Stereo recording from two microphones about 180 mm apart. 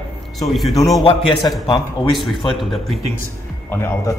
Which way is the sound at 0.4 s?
Centre (ahead or behind).